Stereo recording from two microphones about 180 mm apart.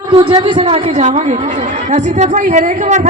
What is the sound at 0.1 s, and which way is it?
A woman's voice, 30° right (ahead or behind).